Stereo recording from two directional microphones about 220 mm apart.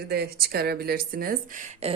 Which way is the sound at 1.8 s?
25° right (ahead or behind).